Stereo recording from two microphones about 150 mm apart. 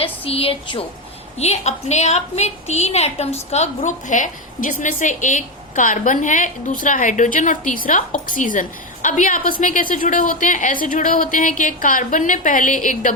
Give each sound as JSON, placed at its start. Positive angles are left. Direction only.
{"t": 0.0, "sound": "a woman's voice", "side_deg": 40}